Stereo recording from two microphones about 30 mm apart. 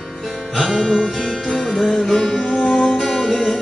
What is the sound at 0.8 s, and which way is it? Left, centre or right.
Music, centre.